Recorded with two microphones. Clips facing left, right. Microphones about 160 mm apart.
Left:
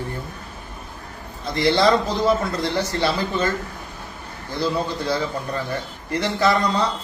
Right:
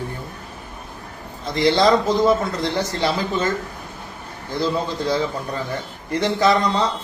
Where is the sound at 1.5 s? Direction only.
15° right (ahead or behind).